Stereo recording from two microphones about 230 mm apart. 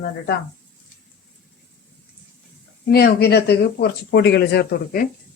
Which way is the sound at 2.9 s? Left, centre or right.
Left.